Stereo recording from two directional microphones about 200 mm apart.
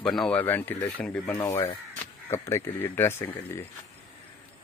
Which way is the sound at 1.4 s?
20° left (ahead or behind).